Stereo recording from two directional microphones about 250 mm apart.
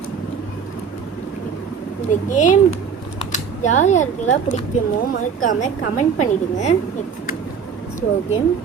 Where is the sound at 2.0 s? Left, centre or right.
Left.